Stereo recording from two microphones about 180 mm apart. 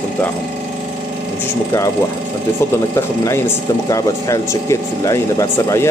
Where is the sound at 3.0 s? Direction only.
15° left (ahead or behind).